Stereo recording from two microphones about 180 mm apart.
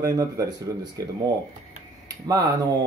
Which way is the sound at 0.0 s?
20° right (ahead or behind).